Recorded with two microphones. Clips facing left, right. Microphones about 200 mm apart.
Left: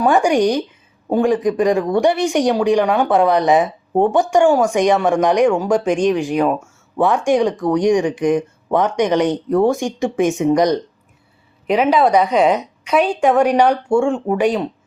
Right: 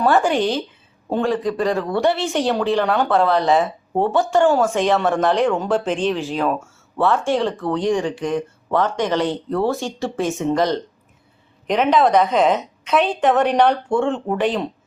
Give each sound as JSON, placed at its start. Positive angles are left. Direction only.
{"t": 0.0, "sound": "speech", "side_deg": 15}